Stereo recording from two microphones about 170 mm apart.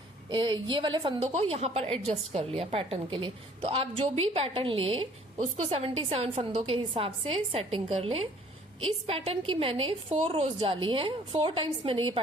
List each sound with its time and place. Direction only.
0.3 s a woman's voice: 30° right (ahead or behind)